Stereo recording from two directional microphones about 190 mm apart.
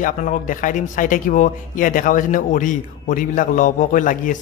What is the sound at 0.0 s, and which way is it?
A man's voice, 45° left (ahead or behind).